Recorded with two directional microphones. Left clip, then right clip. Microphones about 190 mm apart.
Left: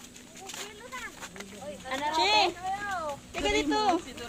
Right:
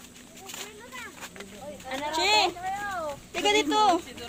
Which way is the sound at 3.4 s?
50° right (ahead or behind).